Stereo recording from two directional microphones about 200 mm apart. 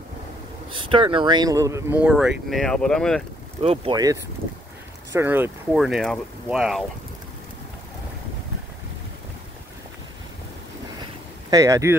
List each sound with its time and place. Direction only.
0.7 s speech: 25° right (ahead or behind); by 3.3 s 5° left (ahead or behind)
3.6 s speech: 30° right (ahead or behind)
3.9 s speech: 20° right (ahead or behind); by 6.8 s centre (ahead or behind)
11.5 s speech: 15° right (ahead or behind)